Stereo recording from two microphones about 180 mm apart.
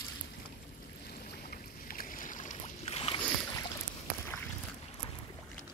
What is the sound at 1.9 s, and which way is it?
Boat, 50° left (ahead or behind).